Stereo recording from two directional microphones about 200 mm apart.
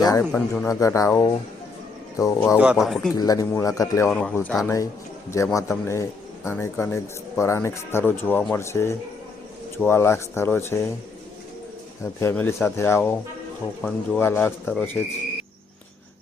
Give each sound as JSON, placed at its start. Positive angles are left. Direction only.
{"t": 0.0, "sound": "speech", "side_deg": 15}
{"t": 0.3, "sound": "speech", "side_deg": 5}
{"t": 2.6, "sound": "speech", "side_deg": -5}
{"t": 3.2, "sound": "speech", "side_deg": 20}
{"t": 4.1, "sound": "speech", "side_deg": 5}
{"t": 12.0, "sound": "speech", "side_deg": 10}